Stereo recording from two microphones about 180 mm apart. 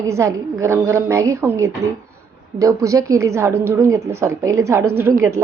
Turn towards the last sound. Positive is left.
turn(degrees=-15)  # may be behind; listen again after turning